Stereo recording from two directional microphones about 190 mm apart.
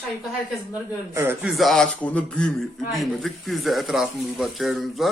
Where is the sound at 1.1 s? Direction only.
10° right (ahead or behind).